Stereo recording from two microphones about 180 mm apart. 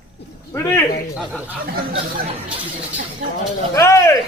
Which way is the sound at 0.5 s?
15° left (ahead or behind).